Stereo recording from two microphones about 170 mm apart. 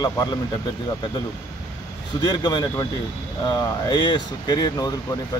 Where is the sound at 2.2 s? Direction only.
25° left (ahead or behind).